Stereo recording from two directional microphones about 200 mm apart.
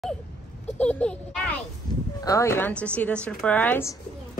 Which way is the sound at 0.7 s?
5° left (ahead or behind).